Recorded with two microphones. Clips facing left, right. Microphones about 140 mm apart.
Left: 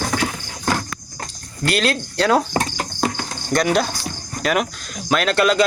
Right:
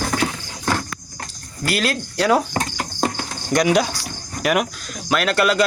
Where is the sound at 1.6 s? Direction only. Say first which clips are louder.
Left 2 dB; 5° right (ahead or behind).